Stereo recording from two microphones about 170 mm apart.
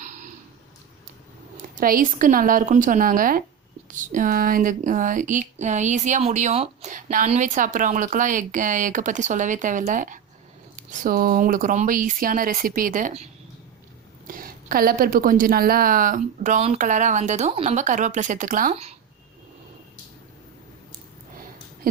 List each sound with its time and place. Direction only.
0.0 s a sound: 50° right (ahead or behind)
1.7 s a woman's voice: 55° right (ahead or behind)
14.3 s a woman's voice: 55° right (ahead or behind)